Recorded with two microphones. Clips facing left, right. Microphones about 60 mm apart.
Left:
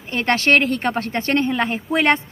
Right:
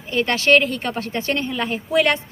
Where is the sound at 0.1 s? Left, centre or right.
Left.